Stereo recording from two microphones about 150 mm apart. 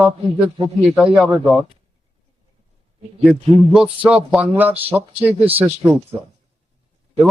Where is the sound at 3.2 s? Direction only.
5° right (ahead or behind).